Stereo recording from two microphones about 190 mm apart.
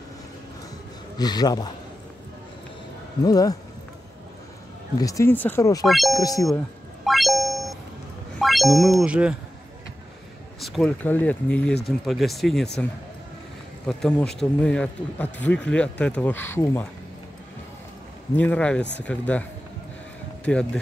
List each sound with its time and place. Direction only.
1.1 s a man's voice: 20° left (ahead or behind)
3.3 s a man's voice: 20° left (ahead or behind)
4.9 s speech: 15° left (ahead or behind)
5.9 s speech: centre (ahead or behind)
6.1 s a man's voice: 20° left (ahead or behind)
7.1 s a sound: centre (ahead or behind)
8.4 s speech: centre (ahead or behind)
10.6 s speech: centre (ahead or behind)
13.8 s speech: centre (ahead or behind)
18.3 s speech: 5° left (ahead or behind)
20.4 s speech: 5° left (ahead or behind)